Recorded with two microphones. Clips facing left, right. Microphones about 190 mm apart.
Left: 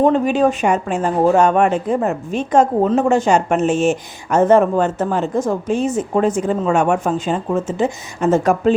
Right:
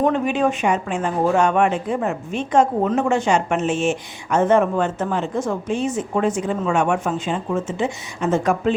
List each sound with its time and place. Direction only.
0.0 s speech: 35° left (ahead or behind)